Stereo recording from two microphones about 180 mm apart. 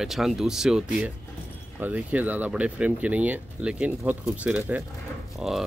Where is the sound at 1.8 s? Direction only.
10° right (ahead or behind).